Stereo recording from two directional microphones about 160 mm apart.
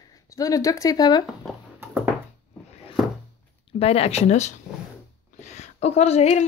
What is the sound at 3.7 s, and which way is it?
Speech, 40° left (ahead or behind).